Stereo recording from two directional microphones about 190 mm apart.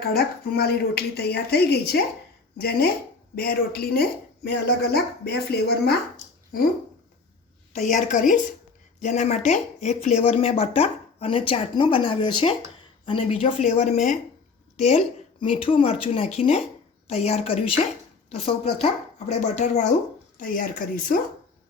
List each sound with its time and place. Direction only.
0.0 s speech: 55° left (ahead or behind)
7.9 s speech: 40° left (ahead or behind)